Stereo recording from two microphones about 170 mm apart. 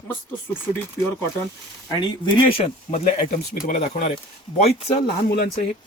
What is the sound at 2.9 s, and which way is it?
Speech, 45° left (ahead or behind).